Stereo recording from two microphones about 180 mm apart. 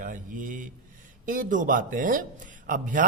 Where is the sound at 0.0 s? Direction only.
45° right (ahead or behind).